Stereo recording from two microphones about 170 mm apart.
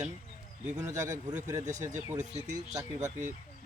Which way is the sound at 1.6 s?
45° right (ahead or behind).